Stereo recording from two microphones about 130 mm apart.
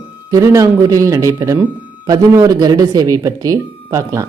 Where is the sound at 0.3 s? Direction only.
25° right (ahead or behind).